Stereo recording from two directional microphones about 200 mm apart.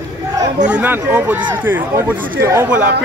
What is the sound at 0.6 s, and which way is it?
Speech, 10° right (ahead or behind).